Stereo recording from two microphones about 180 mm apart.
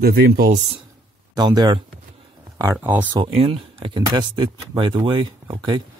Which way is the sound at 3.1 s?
35° right (ahead or behind).